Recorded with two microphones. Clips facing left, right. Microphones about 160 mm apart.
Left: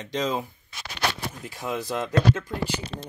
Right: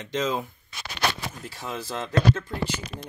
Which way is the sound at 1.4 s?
15° left (ahead or behind).